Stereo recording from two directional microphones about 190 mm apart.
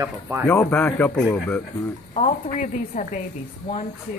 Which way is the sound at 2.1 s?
35° left (ahead or behind).